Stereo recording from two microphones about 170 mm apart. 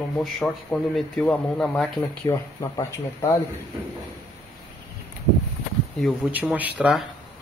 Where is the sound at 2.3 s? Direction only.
20° left (ahead or behind).